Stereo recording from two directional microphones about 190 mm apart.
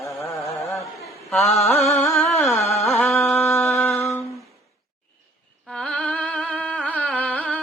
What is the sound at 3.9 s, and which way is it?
Humming, 15° left (ahead or behind).